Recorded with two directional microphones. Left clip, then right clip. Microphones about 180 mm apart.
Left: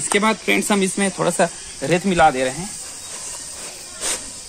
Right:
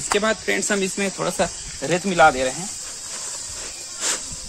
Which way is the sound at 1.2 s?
20° left (ahead or behind).